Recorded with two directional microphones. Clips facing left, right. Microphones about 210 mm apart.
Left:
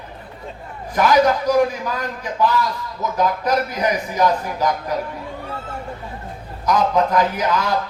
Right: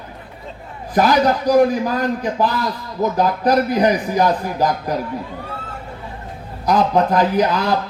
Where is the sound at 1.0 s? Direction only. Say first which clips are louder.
Even; 35° right (ahead or behind).